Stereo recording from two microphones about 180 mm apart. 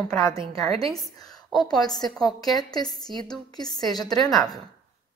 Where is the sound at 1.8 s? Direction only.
20° left (ahead or behind).